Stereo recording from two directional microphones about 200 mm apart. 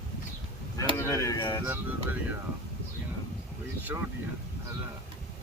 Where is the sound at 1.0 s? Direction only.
15° left (ahead or behind).